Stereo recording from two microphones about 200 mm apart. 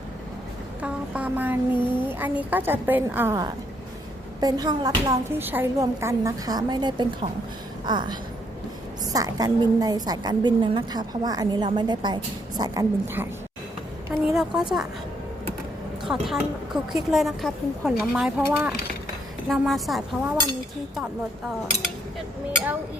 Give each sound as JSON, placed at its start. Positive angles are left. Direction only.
{"t": 0.8, "sound": "a woman's voice", "side_deg": -5}
{"t": 14.3, "sound": "a woman's voice", "side_deg": 0}
{"t": 16.2, "sound": "a woman's voice", "side_deg": 0}